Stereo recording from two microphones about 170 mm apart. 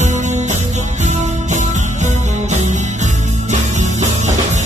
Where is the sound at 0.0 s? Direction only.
45° right (ahead or behind).